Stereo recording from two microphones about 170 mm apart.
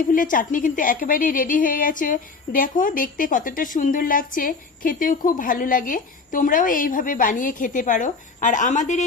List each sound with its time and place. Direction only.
0.1 s a woman's voice: 50° left (ahead or behind)